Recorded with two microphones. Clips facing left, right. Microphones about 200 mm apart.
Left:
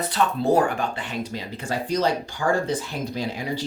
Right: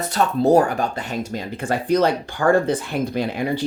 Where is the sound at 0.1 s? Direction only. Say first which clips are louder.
Right 6 dB; 40° right (ahead or behind).